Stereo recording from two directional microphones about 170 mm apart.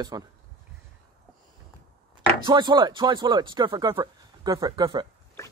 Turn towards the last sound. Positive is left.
turn(degrees=-25)  # may be behind; listen again after turning